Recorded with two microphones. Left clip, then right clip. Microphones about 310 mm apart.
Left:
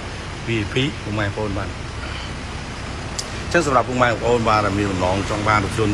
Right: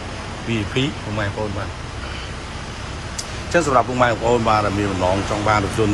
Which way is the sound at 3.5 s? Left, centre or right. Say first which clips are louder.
Right 1 dB; centre.